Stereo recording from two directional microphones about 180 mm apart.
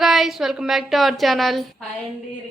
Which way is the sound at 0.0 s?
Centre (ahead or behind).